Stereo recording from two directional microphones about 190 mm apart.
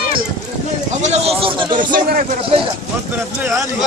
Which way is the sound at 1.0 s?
35° right (ahead or behind).